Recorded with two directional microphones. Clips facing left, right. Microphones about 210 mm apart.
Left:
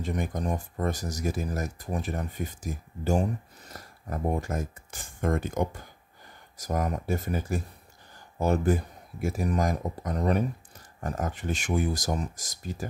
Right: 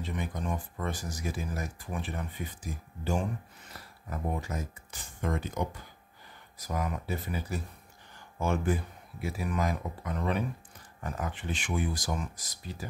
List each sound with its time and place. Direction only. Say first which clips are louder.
0.0 s speech: left 5 dB; 45° left (ahead or behind)